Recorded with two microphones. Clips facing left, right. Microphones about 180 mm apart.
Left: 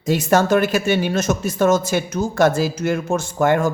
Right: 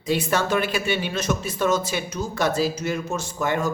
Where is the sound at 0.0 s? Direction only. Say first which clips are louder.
Left 6 dB; 45° left (ahead or behind).